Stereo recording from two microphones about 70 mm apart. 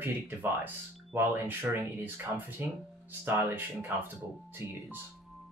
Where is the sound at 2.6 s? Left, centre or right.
Right.